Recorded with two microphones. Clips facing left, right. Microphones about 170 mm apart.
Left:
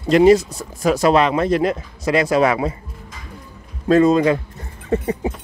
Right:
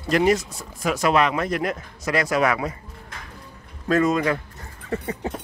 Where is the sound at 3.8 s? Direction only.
30° left (ahead or behind).